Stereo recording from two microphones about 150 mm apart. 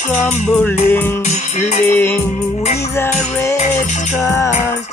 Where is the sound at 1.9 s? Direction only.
10° left (ahead or behind).